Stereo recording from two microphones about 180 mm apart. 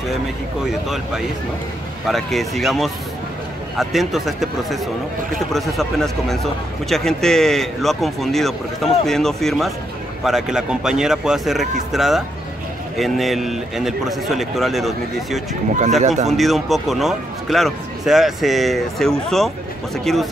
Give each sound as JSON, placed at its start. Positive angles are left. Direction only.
{"t": 0.7, "sound": "a man's voice", "side_deg": 0}
{"t": 16.0, "sound": "speech", "side_deg": -40}
{"t": 16.3, "sound": "a man's voice", "side_deg": 0}